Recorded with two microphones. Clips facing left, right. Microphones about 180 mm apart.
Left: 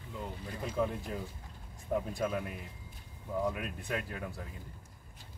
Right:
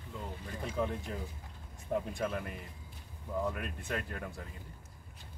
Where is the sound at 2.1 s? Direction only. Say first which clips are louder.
Left 2 dB; 5° left (ahead or behind).